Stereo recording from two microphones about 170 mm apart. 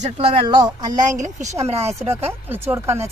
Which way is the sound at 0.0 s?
40° right (ahead or behind).